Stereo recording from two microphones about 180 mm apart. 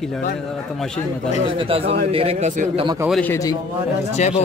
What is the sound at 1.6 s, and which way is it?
Speech, 30° right (ahead or behind).